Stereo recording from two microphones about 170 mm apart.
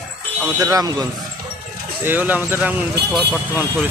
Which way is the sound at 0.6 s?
20° right (ahead or behind).